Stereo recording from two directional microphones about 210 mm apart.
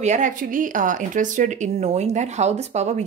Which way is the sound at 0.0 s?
35° right (ahead or behind).